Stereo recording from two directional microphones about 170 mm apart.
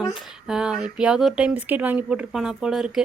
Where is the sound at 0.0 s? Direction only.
5° right (ahead or behind).